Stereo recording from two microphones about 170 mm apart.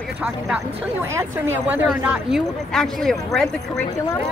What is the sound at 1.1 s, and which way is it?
Speech, 10° right (ahead or behind).